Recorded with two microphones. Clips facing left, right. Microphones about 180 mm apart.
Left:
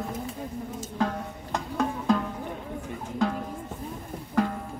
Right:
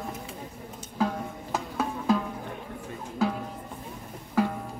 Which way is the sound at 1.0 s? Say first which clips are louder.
Right 1 dB; 5° right (ahead or behind).